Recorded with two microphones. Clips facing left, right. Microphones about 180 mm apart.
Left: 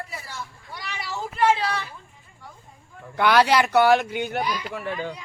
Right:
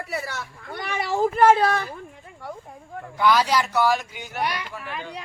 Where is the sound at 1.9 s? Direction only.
65° right (ahead or behind).